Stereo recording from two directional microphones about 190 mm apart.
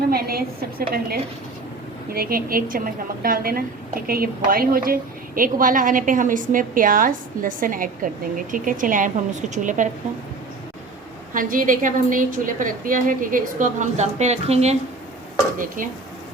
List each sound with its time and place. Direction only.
0.1 s a woman's voice: 55° right (ahead or behind)
11.3 s a woman's voice: 45° right (ahead or behind)
15.5 s a woman's voice: 45° right (ahead or behind)